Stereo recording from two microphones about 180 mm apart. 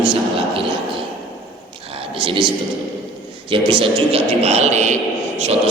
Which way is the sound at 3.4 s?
30° right (ahead or behind).